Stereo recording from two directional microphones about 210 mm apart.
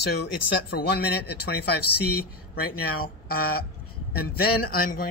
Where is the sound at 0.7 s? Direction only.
50° left (ahead or behind).